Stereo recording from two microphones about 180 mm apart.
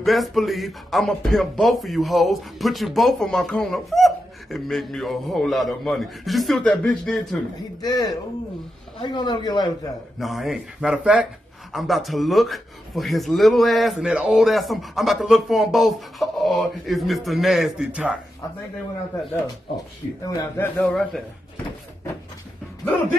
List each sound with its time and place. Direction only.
0.0 s speech: centre (ahead or behind)
7.8 s a man's voice: 20° left (ahead or behind)
10.1 s speech: centre (ahead or behind)
20.2 s a man's voice: 10° left (ahead or behind)